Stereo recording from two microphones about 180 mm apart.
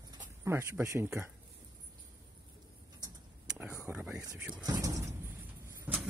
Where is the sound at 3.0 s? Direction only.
15° right (ahead or behind).